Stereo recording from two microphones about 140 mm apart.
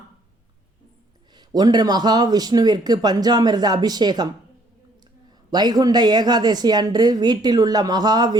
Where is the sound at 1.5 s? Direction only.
30° right (ahead or behind).